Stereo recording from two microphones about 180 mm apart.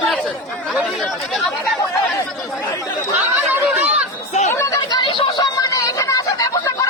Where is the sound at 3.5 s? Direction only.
10° right (ahead or behind).